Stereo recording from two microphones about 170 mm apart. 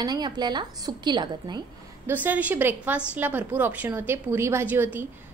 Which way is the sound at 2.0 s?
10° right (ahead or behind).